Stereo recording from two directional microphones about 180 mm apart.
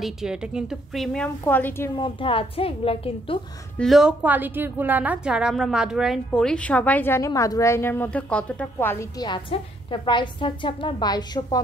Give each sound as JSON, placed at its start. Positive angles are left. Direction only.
{"t": 0.0, "sound": "a woman's voice", "side_deg": -5}
{"t": 2.0, "sound": "a woman's voice", "side_deg": 25}
{"t": 3.7, "sound": "a woman's voice", "side_deg": 0}
{"t": 9.3, "sound": "a woman's voice", "side_deg": 25}